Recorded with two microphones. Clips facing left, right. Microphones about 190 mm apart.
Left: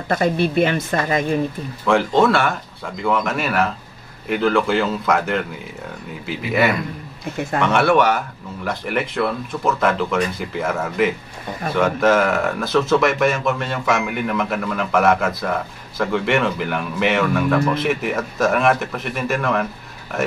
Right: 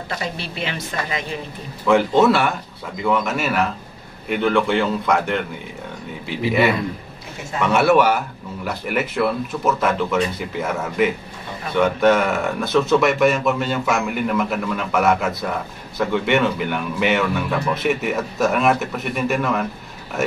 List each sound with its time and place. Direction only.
0.1 s speech: 50° left (ahead or behind)
1.9 s speech: centre (ahead or behind)
6.5 s speech: centre (ahead or behind)